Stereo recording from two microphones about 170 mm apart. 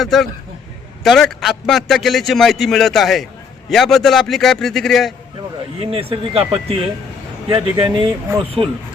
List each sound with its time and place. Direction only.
0.0 s a man's voice: centre (ahead or behind)
5.8 s speech: 35° right (ahead or behind)